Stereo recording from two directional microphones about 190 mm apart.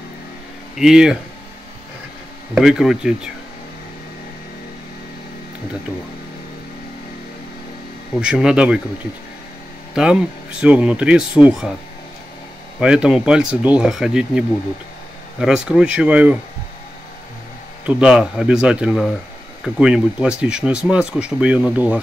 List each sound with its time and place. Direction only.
0.7 s speech: 5° right (ahead or behind)
2.5 s speech: 5° right (ahead or behind)
8.2 s speech: 5° right (ahead or behind)
9.9 s speech: 5° right (ahead or behind)
12.8 s speech: 5° right (ahead or behind)
17.8 s speech: 5° right (ahead or behind)